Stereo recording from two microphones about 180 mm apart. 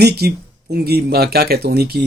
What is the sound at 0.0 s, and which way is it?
Speech, 60° right (ahead or behind).